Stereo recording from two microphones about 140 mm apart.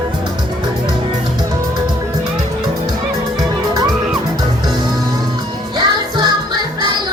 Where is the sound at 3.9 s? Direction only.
5° right (ahead or behind).